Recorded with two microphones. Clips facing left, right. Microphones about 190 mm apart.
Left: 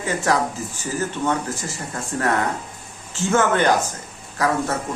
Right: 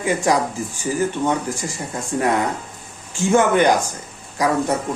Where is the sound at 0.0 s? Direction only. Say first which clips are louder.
Right 3 dB; 15° right (ahead or behind).